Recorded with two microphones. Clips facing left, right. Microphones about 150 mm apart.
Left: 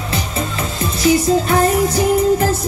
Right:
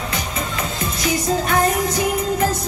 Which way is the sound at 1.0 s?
30° left (ahead or behind).